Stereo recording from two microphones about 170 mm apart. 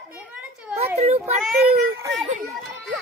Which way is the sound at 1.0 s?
40° right (ahead or behind).